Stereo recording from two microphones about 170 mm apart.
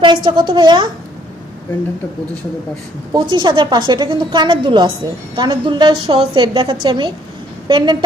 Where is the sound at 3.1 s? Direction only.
25° right (ahead or behind).